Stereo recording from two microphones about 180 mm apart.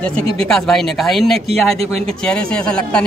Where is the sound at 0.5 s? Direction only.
Centre (ahead or behind).